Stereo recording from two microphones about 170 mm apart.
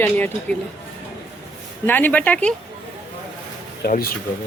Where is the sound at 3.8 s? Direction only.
60° left (ahead or behind).